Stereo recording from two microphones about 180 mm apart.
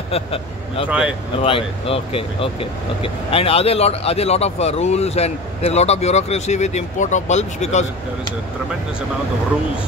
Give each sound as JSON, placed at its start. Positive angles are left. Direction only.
{"t": 0.1, "sound": "speech", "side_deg": 30}
{"t": 0.8, "sound": "speech", "side_deg": -5}
{"t": 1.4, "sound": "speech", "side_deg": 30}